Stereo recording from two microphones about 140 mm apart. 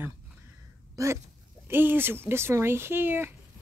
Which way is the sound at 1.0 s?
25° right (ahead or behind).